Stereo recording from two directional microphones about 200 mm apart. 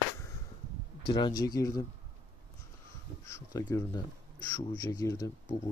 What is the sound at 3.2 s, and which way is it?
Speech, 15° left (ahead or behind).